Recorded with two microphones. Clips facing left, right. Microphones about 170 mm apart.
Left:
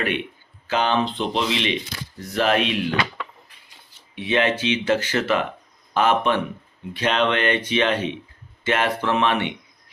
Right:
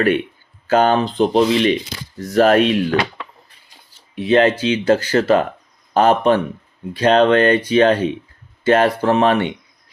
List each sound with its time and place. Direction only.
0.7 s speech: 45° right (ahead or behind)
4.1 s speech: 40° right (ahead or behind)